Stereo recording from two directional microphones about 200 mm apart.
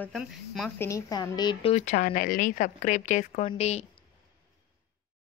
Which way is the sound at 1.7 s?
35° left (ahead or behind).